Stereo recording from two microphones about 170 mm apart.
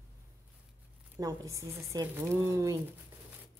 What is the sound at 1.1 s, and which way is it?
Speech, 20° right (ahead or behind).